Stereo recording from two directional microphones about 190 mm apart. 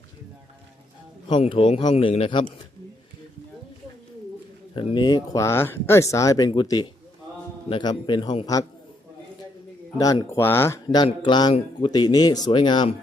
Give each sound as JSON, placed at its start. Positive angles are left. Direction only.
{"t": 1.3, "sound": "speech", "side_deg": 30}
{"t": 4.7, "sound": "speech", "side_deg": 25}
{"t": 10.0, "sound": "speech", "side_deg": 20}